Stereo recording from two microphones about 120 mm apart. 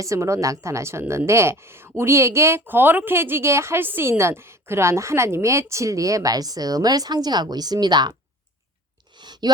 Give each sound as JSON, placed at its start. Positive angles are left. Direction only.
{"t": 0.0, "sound": "speech", "side_deg": -25}
{"t": 9.1, "sound": "clicking", "side_deg": -40}